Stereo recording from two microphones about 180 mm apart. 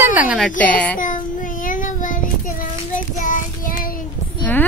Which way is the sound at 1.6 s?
45° left (ahead or behind).